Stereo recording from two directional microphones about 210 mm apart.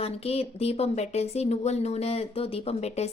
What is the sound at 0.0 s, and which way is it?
Speech, 30° left (ahead or behind).